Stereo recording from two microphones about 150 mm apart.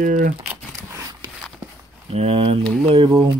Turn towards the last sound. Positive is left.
turn(degrees=-40)  # may be behind; listen again after turning